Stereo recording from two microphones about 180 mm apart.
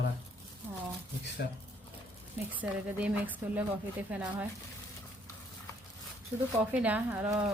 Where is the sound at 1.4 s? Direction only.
60° left (ahead or behind).